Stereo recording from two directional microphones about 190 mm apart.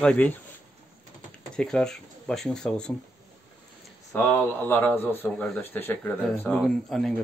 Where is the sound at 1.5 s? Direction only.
5° left (ahead or behind).